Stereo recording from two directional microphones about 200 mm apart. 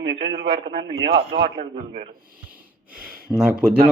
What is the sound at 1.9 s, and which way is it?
Speech, 25° right (ahead or behind).